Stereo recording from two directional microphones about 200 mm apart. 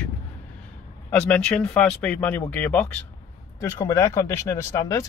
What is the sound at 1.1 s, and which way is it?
Speech, 5° left (ahead or behind).